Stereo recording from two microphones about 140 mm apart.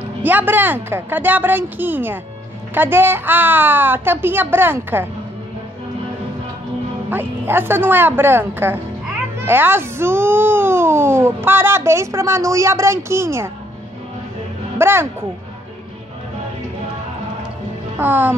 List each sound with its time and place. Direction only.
0.2 s speech: 10° right (ahead or behind)
7.1 s speech: 15° right (ahead or behind)
14.8 s speech: 15° right (ahead or behind)
17.9 s speech: 15° right (ahead or behind)